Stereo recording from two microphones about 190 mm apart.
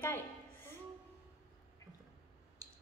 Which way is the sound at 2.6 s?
20° right (ahead or behind).